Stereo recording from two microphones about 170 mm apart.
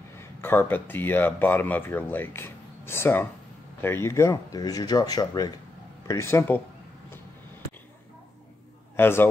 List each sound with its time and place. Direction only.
0.2 s speech: 15° left (ahead or behind)
8.9 s a man's voice: 15° left (ahead or behind)